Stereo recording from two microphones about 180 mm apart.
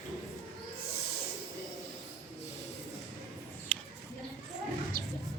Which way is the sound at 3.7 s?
5° left (ahead or behind).